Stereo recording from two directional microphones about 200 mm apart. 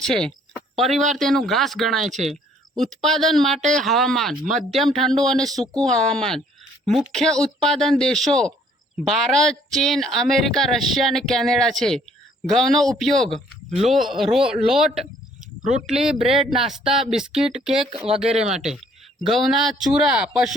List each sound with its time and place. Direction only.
0.0 s speech: 5° left (ahead or behind)
15.6 s speech: 35° right (ahead or behind)
16.6 s speech: centre (ahead or behind)